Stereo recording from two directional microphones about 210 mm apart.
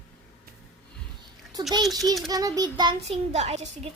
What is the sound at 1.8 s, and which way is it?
Speech, centre (ahead or behind).